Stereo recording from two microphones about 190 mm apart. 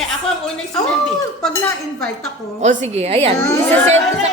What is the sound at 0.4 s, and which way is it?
Speech, 5° left (ahead or behind).